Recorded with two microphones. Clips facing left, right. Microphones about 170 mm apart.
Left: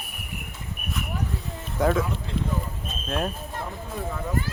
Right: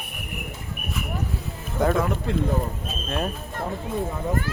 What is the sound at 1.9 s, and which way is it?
Speech, 60° right (ahead or behind).